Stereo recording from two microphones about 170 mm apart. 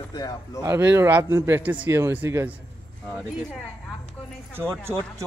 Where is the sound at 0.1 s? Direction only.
25° left (ahead or behind).